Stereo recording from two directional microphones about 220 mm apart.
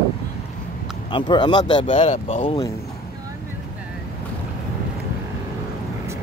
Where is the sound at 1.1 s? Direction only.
20° left (ahead or behind).